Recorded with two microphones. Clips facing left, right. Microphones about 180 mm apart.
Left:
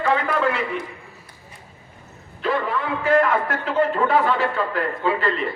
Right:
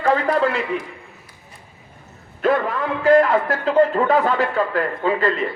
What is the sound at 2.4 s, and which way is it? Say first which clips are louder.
A man's voice: right 4 dB; 45° right (ahead or behind).